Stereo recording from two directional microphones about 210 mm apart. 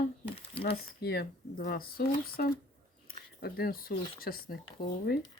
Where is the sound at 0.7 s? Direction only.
50° left (ahead or behind).